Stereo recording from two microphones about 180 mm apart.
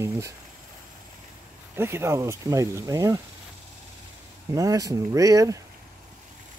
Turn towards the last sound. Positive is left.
turn(degrees=-20)  # may be behind; listen again after turning